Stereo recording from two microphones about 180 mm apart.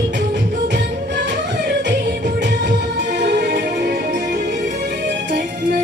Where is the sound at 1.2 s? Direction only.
75° right (ahead or behind).